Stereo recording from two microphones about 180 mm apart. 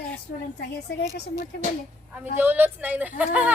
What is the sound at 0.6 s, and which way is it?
Speech, 65° left (ahead or behind).